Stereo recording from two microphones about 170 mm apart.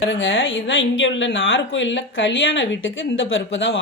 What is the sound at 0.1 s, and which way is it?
Speech, 90° left.